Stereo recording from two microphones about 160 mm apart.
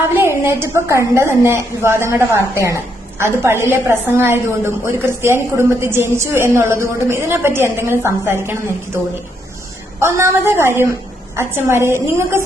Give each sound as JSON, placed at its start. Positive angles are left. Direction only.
{"t": 0.0, "sound": "a woman's voice", "side_deg": -15}
{"t": 10.0, "sound": "a woman's voice", "side_deg": -15}